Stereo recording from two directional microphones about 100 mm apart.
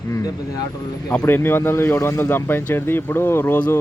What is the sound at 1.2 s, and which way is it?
Speech, 20° left (ahead or behind).